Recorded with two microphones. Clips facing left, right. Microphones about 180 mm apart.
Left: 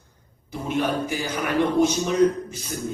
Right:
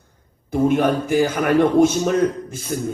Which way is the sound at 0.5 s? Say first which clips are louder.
Right 8 dB; 50° right (ahead or behind).